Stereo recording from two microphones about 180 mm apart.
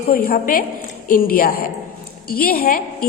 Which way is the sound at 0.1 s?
55° left (ahead or behind).